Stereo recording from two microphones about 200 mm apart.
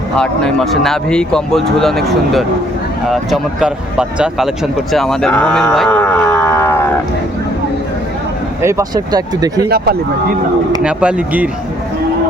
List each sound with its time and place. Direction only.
0.2 s speech: centre (ahead or behind)
8.6 s speech: 20° right (ahead or behind)
9.6 s speech: 50° right (ahead or behind)
10.8 s speech: 5° right (ahead or behind)